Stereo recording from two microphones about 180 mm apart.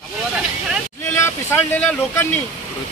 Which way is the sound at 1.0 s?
15° left (ahead or behind).